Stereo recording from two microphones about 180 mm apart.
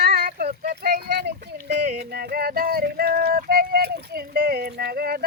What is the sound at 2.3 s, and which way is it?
Music, 55° right (ahead or behind).